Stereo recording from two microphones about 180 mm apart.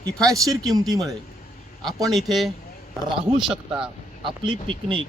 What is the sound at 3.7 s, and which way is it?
Speech, 30° right (ahead or behind).